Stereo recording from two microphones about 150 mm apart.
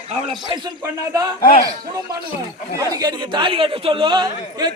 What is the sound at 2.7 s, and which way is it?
Speech, 25° right (ahead or behind).